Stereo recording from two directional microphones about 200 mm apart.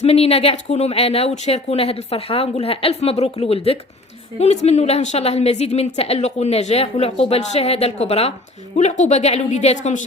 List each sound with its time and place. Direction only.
0.0 s a woman's voice: 30° left (ahead or behind)